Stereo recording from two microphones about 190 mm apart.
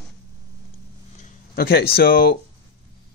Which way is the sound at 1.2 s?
50° left (ahead or behind).